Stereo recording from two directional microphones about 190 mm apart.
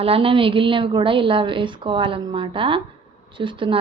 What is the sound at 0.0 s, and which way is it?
A woman's voice, 30° right (ahead or behind).